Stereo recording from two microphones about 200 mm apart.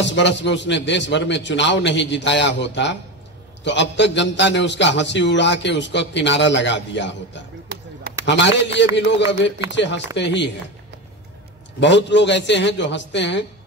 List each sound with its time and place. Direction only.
0.0 s a man's voice: 65° left (ahead or behind)
11.8 s a man's voice: 60° left (ahead or behind)